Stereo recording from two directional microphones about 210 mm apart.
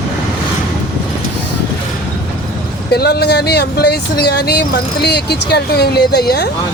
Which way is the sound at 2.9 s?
50° left (ahead or behind).